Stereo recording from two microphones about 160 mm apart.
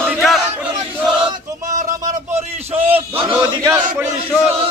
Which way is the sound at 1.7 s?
50° right (ahead or behind).